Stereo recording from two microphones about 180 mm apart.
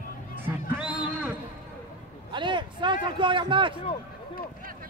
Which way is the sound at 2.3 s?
25° right (ahead or behind).